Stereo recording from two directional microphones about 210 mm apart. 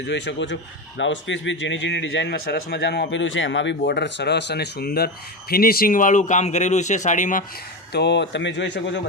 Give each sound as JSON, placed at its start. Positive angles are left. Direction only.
{"t": 0.1, "sound": "a man's voice", "side_deg": 55}
{"t": 7.9, "sound": "speech", "side_deg": 55}